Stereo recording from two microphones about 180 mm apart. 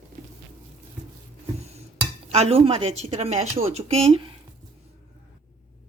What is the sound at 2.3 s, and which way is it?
Speech, 35° right (ahead or behind).